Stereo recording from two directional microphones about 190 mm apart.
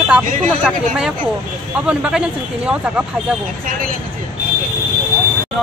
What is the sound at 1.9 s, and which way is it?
A man's voice, 5° right (ahead or behind).